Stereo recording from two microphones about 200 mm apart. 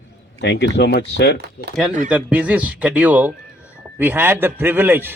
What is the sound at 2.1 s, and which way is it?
A man's voice, 5° right (ahead or behind).